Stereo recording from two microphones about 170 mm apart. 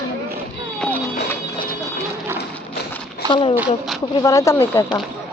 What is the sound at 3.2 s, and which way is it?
Speech, 30° left (ahead or behind).